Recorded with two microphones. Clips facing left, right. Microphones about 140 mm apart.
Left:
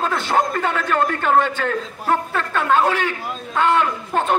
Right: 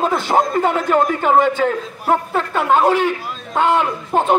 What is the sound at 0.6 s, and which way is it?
Speech, 40° right (ahead or behind).